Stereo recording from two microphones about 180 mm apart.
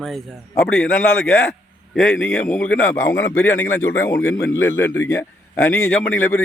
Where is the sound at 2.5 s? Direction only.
10° left (ahead or behind).